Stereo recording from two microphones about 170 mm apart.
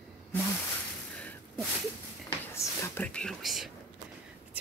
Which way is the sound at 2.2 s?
15° left (ahead or behind).